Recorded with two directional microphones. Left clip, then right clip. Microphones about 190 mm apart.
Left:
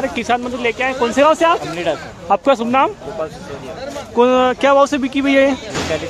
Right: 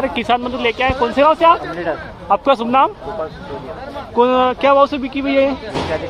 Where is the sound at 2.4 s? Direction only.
20° left (ahead or behind).